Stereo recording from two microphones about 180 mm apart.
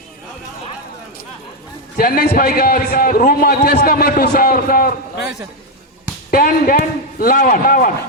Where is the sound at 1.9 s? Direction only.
55° left (ahead or behind).